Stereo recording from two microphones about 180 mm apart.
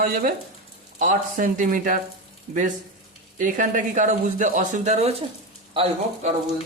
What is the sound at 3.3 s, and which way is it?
Speech, 45° right (ahead or behind).